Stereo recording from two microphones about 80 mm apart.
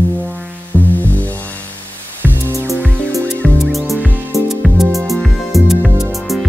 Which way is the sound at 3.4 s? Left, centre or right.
Centre.